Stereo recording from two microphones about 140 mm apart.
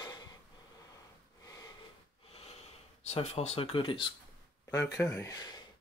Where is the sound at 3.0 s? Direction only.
50° left (ahead or behind).